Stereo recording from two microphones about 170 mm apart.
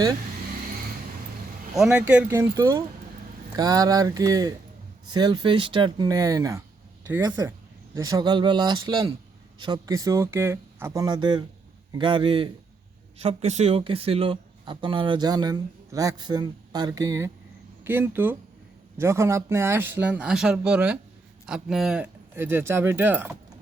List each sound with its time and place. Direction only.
1.7 s speech: 5° right (ahead or behind); by 12.5 s 30° right (ahead or behind)
13.2 s speech: 40° right (ahead or behind); by 23.3 s 10° right (ahead or behind)